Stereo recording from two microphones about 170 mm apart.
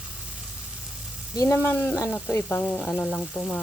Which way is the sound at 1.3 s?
15° left (ahead or behind).